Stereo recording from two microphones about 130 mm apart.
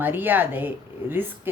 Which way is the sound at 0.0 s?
15° right (ahead or behind).